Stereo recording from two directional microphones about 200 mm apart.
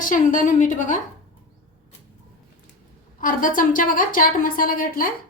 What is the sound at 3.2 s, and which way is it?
A woman's voice, 45° left (ahead or behind).